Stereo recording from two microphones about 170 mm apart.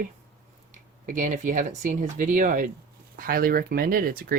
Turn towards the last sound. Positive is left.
turn(degrees=-60)  # may be behind; listen again after turning